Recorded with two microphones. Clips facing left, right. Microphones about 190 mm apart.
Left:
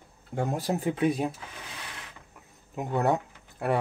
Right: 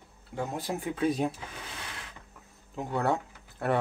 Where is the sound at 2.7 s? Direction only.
20° left (ahead or behind).